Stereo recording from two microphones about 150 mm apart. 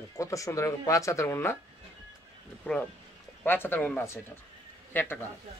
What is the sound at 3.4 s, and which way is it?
Speech, 15° left (ahead or behind).